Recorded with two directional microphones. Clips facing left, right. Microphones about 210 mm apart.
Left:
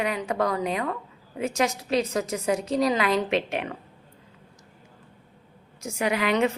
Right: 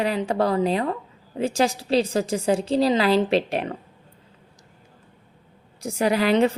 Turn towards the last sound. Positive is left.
turn(degrees=-35)  # may be behind; listen again after turning